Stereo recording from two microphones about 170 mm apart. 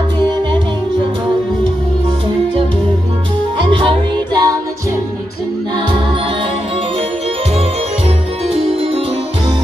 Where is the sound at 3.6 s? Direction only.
30° right (ahead or behind).